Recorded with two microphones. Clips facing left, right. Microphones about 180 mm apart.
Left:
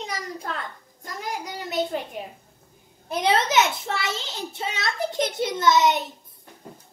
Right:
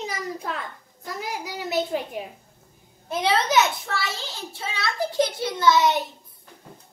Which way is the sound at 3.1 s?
20° left (ahead or behind).